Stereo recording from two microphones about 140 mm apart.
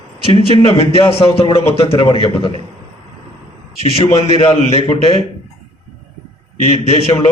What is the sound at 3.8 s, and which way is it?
A man's voice, 45° left (ahead or behind).